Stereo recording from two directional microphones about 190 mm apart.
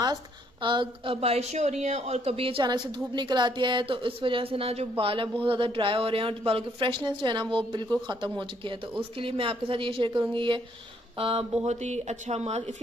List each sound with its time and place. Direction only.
0.0 s a woman's voice: 25° right (ahead or behind)